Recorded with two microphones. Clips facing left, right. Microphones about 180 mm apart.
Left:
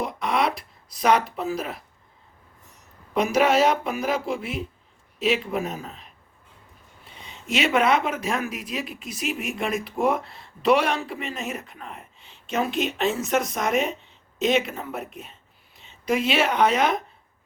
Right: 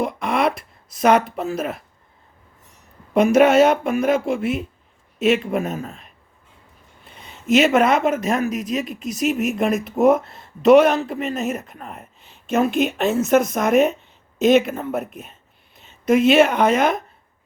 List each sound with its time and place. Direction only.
0.0 s a sound: 55° right (ahead or behind)
3.2 s speech: 55° right (ahead or behind)
7.5 s a woman's voice: 45° right (ahead or behind)